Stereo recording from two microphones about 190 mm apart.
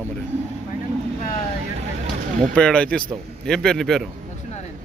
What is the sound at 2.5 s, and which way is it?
A man's voice, 5° left (ahead or behind).